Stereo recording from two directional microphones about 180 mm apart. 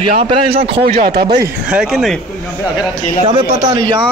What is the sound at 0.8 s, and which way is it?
Speech, 55° right (ahead or behind).